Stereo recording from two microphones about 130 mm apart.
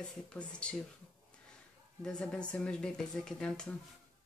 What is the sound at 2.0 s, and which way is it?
Speech, 5° left (ahead or behind).